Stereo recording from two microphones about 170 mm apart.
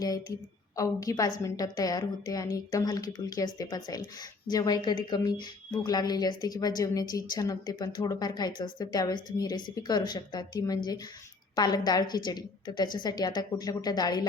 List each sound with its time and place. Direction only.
0.0 s a woman's voice: 20° left (ahead or behind)